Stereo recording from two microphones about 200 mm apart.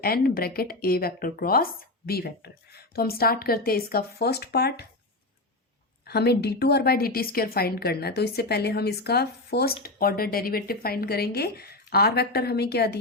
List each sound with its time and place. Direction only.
0.0 s a woman's voice: 50° left (ahead or behind)
6.1 s a woman's voice: 55° left (ahead or behind)